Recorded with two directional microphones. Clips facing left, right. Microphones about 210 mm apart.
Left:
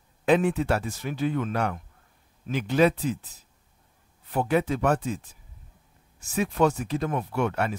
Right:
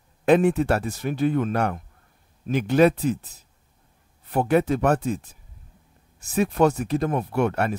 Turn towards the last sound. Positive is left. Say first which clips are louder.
# right 4 dB
turn(degrees=-45)  # may be behind; listen again after turning